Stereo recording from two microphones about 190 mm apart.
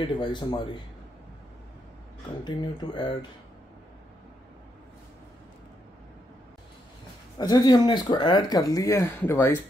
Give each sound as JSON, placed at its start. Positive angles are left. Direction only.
{"t": 0.0, "sound": "speech", "side_deg": 25}
{"t": 2.4, "sound": "speech", "side_deg": 25}
{"t": 7.3, "sound": "speech", "side_deg": 20}